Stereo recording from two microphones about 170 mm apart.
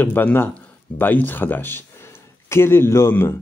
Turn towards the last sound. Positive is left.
turn(degrees=15)  # may be behind; listen again after turning